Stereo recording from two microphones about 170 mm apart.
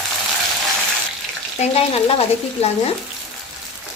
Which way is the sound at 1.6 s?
35° left (ahead or behind).